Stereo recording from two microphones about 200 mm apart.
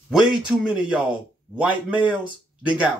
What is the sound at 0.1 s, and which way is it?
A man's voice, 5° right (ahead or behind).